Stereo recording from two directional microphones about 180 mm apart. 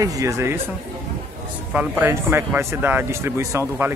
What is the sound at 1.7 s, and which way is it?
Speech, 10° right (ahead or behind).